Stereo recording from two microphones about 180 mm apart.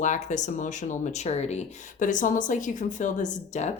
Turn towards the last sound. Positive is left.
turn(degrees=40)  # may be behind; listen again after turning